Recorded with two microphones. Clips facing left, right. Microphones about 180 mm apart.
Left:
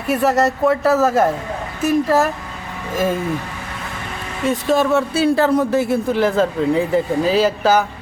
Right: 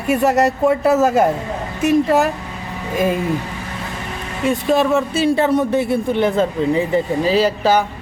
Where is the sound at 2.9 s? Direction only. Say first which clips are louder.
Right 1 dB; 15° right (ahead or behind).